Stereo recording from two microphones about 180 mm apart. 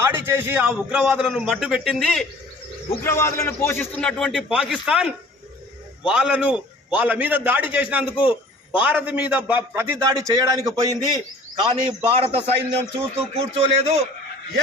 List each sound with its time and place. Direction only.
0.0 s a man's voice: 15° right (ahead or behind)
3.0 s a man's voice: 15° left (ahead or behind); by 14.0 s 35° right (ahead or behind)